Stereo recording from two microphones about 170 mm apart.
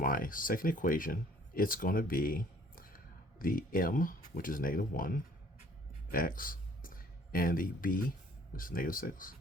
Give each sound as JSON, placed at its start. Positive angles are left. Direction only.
{"t": 0.0, "sound": "speech", "side_deg": 55}
{"t": 6.1, "sound": "a sound", "side_deg": 55}
{"t": 8.5, "sound": "speech", "side_deg": 55}